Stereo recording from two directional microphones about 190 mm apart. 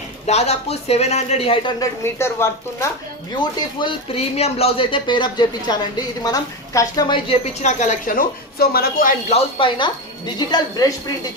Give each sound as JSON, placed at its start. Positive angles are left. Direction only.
{"t": 0.3, "sound": "speech", "side_deg": 35}
{"t": 1.8, "sound": "a woman's voice", "side_deg": 15}
{"t": 3.3, "sound": "speech", "side_deg": 25}
{"t": 7.3, "sound": "speech", "side_deg": 35}
{"t": 9.3, "sound": "speech", "side_deg": 25}